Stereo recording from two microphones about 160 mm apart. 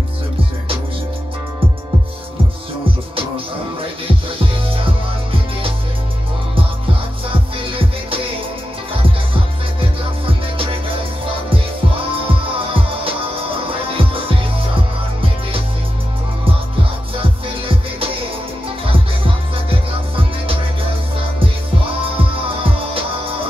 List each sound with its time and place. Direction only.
4.6 s music: 35° right (ahead or behind)
7.5 s music: 35° right (ahead or behind)
12.5 s music: 35° right (ahead or behind)
22.1 s music: 35° right (ahead or behind)